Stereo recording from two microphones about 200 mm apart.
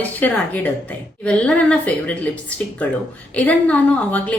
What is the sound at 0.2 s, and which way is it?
A woman's voice, 10° left (ahead or behind).